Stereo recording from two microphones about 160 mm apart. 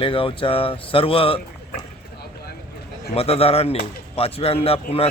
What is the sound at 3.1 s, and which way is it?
Speech, 40° left (ahead or behind).